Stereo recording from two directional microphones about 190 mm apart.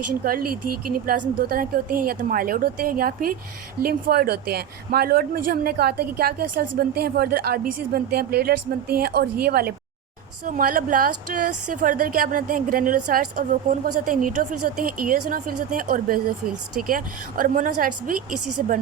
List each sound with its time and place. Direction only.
0.3 s a woman's voice: 50° right (ahead or behind)